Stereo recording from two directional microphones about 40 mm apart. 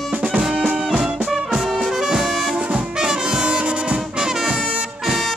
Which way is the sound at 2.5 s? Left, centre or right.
Right.